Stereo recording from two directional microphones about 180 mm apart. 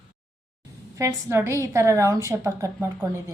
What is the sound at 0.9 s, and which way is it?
A woman's voice, 15° right (ahead or behind).